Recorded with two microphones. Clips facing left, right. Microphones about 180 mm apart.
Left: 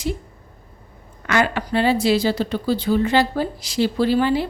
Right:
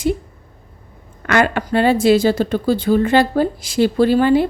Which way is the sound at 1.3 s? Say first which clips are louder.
Right 4 dB; 55° right (ahead or behind).